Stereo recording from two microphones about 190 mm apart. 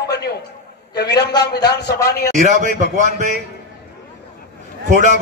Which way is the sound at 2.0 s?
15° left (ahead or behind).